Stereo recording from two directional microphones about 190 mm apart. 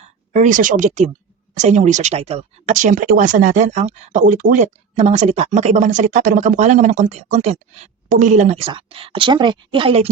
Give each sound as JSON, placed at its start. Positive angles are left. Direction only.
{"t": 0.0, "sound": "speech", "side_deg": -40}